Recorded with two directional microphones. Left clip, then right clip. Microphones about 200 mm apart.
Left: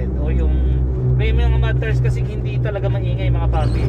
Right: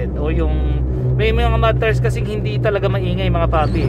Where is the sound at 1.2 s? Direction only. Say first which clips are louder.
Right 11 dB; 45° right (ahead or behind).